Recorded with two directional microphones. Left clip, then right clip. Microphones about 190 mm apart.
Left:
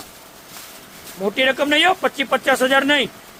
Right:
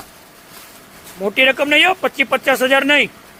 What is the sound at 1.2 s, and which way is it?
Speech, 15° right (ahead or behind).